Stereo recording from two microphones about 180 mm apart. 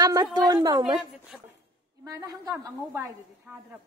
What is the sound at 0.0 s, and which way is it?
A woman's voice, 20° right (ahead or behind).